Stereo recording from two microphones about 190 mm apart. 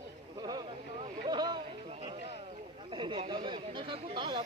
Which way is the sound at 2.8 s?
25° right (ahead or behind).